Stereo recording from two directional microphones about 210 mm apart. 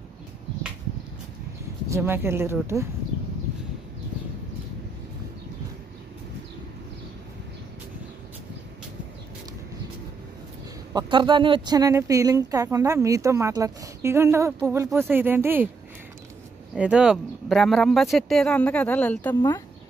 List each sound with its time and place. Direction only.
1.9 s speech: 10° right (ahead or behind)
10.9 s speech: 20° right (ahead or behind)
16.7 s speech: 5° right (ahead or behind)